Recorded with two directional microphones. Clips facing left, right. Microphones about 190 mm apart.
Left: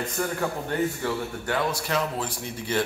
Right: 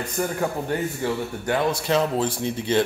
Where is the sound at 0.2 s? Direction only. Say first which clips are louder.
Right 4 dB; 20° right (ahead or behind).